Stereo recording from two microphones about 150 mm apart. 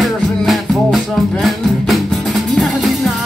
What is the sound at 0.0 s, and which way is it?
Music, centre (ahead or behind).